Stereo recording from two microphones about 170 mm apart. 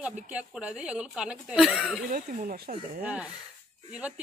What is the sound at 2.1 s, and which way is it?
Speech, 55° right (ahead or behind).